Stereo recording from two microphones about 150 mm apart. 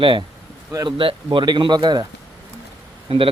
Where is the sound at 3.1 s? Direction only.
35° right (ahead or behind).